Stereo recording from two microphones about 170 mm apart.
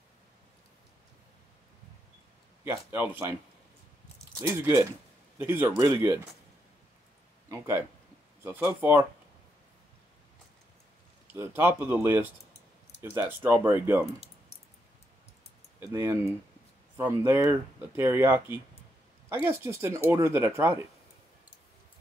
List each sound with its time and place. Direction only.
2.6 s speech: 15° right (ahead or behind)
5.4 s speech: 15° right (ahead or behind)
7.4 s speech: 15° right (ahead or behind)
11.3 s speech: 10° right (ahead or behind)
15.8 s speech: 15° right (ahead or behind)